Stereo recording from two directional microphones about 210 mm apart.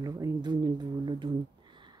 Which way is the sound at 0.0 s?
15° right (ahead or behind).